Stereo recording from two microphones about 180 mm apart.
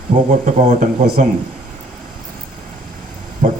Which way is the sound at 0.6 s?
40° right (ahead or behind).